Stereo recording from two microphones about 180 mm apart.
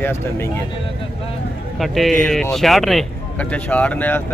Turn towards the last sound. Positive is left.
turn(degrees=10)  # may be behind; listen again after turning